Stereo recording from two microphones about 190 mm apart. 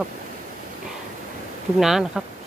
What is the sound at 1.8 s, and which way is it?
Speech, centre (ahead or behind).